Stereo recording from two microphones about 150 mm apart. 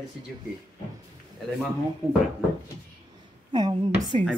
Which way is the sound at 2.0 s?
5° right (ahead or behind).